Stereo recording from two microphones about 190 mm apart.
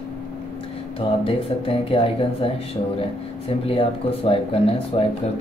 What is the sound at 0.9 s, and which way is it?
Speech, 30° left (ahead or behind).